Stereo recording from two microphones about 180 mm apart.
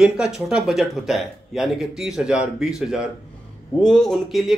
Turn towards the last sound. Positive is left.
turn(degrees=0)  # may be behind; listen again after turning